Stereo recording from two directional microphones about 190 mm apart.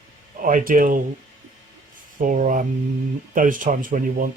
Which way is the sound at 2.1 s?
45° right (ahead or behind).